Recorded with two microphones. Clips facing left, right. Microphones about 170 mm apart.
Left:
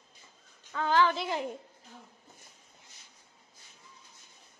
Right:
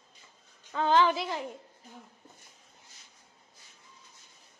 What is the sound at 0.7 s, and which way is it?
Speech, 20° right (ahead or behind).